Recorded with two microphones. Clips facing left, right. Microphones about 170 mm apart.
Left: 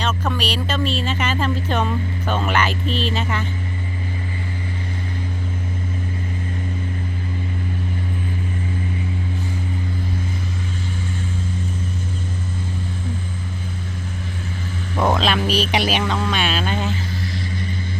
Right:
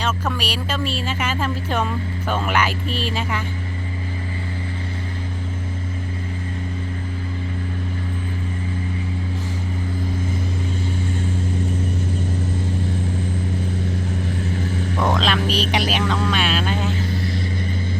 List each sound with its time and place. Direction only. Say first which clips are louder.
0.0 s speech: left 1 dB; 10° right (ahead or behind)
15.0 s music: left 2 dB; 5° left (ahead or behind)
15.9 s vehicle: even; centre (ahead or behind)